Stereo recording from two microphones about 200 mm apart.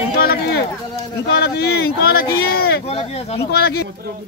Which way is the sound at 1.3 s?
55° left (ahead or behind).